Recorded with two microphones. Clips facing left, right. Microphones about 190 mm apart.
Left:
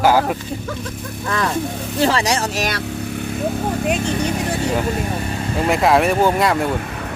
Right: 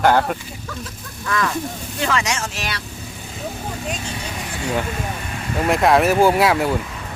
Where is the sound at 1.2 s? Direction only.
35° left (ahead or behind).